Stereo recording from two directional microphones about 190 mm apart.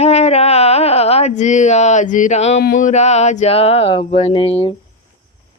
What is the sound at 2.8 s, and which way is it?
Speech, 35° left (ahead or behind).